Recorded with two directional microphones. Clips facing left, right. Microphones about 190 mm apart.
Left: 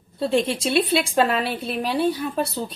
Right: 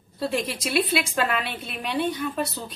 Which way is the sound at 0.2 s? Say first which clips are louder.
Left 6 dB; 25° left (ahead or behind).